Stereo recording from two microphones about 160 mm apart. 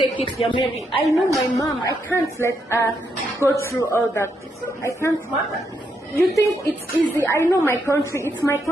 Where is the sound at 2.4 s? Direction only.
15° left (ahead or behind).